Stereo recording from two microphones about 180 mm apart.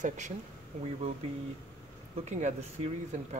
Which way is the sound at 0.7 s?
35° right (ahead or behind).